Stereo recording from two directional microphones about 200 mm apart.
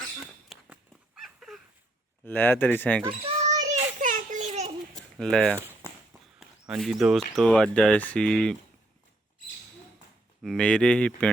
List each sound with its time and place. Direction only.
0.2 s a sound: centre (ahead or behind)
2.2 s speech: 10° left (ahead or behind)
3.0 s children playing: 30° right (ahead or behind)
5.1 s speech: 5° left (ahead or behind)
6.1 s walk: 15° right (ahead or behind)
6.7 s speech: centre (ahead or behind)
10.4 s speech: centre (ahead or behind)